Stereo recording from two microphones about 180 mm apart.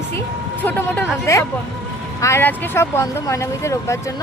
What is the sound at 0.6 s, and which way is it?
A woman's voice, 10° left (ahead or behind).